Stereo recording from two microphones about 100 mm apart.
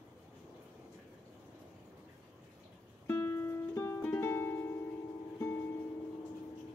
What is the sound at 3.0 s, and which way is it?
Music, 20° left (ahead or behind).